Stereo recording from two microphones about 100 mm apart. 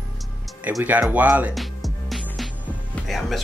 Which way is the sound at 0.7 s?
20° right (ahead or behind).